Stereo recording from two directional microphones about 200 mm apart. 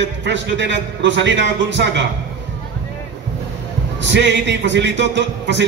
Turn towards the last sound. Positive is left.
turn(degrees=-60)  # may be behind; listen again after turning